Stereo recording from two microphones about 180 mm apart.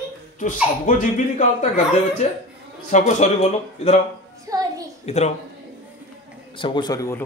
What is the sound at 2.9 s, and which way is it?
Speech, 40° left (ahead or behind).